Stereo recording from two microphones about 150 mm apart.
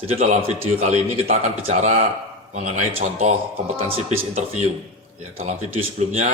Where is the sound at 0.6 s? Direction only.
45° right (ahead or behind).